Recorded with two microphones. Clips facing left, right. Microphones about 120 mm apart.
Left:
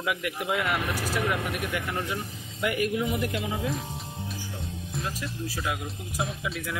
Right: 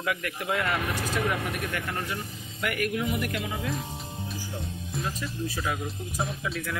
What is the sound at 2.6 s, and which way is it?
Speech, 20° left (ahead or behind).